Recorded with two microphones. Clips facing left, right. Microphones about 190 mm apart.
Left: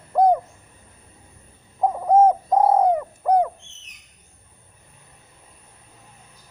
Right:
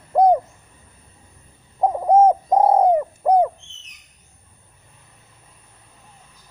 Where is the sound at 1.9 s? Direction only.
20° right (ahead or behind).